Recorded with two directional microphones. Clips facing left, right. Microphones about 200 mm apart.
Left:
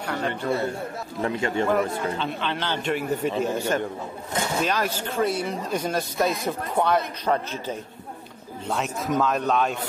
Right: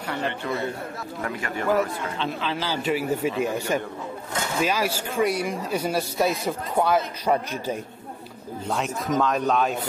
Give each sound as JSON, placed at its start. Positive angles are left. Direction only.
{"t": 0.0, "sound": "a sound", "side_deg": 0}
{"t": 1.2, "sound": "speech", "side_deg": 25}
{"t": 2.1, "sound": "a man's voice", "side_deg": 0}
{"t": 8.6, "sound": "a man's voice", "side_deg": 0}